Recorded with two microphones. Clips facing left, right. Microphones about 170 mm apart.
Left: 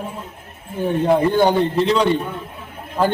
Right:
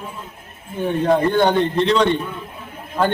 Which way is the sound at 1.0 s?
5° left (ahead or behind).